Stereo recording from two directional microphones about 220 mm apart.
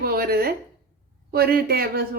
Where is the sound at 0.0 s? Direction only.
45° right (ahead or behind).